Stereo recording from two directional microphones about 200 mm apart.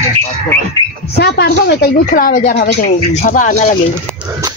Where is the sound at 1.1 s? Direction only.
55° left (ahead or behind).